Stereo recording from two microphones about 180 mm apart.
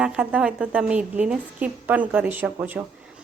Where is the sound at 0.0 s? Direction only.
5° right (ahead or behind).